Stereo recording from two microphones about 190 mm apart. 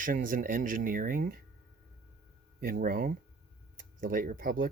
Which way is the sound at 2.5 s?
50° right (ahead or behind).